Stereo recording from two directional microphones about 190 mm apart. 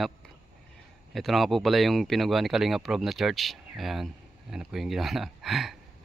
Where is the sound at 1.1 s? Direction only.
Centre (ahead or behind).